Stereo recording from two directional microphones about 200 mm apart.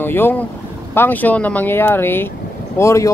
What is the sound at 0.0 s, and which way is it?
Speech, 10° left (ahead or behind).